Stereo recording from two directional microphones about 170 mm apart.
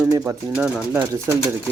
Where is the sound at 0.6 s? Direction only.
5° right (ahead or behind).